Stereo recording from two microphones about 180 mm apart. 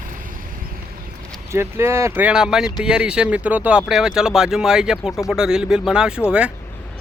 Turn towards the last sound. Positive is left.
turn(degrees=-5)  # may be behind; listen again after turning